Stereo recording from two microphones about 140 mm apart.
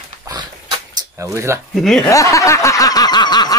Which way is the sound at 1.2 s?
20° right (ahead or behind).